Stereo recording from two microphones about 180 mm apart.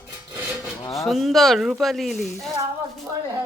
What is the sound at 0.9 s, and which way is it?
Speech, centre (ahead or behind).